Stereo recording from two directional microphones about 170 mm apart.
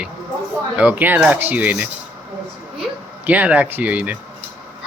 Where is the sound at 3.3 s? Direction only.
10° right (ahead or behind).